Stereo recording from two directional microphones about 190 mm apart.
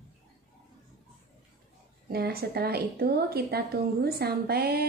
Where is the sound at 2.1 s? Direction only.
55° right (ahead or behind).